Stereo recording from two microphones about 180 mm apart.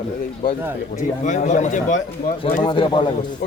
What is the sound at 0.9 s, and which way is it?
Speech, 40° left (ahead or behind).